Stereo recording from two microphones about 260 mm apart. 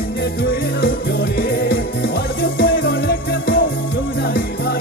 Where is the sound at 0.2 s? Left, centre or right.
Left.